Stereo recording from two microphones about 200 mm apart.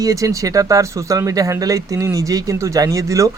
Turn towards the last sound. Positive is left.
turn(degrees=-15)  # may be behind; listen again after turning